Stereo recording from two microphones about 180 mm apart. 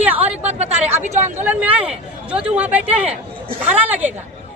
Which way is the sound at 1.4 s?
10° right (ahead or behind).